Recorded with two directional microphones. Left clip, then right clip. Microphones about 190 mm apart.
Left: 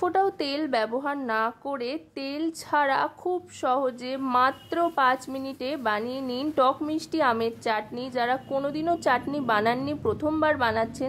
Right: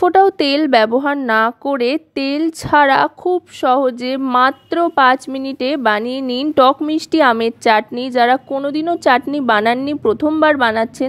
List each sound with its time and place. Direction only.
0.0 s speech: 35° right (ahead or behind)
8.5 s speech: 25° right (ahead or behind)